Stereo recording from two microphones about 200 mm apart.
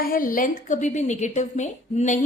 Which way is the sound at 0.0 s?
45° left (ahead or behind).